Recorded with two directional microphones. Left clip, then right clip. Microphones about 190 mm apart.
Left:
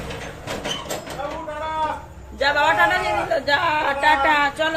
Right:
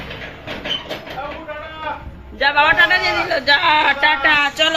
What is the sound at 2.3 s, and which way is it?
A man's voice, 15° right (ahead or behind).